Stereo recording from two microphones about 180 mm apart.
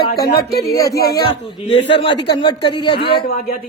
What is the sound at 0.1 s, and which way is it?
Speech, 60° left (ahead or behind).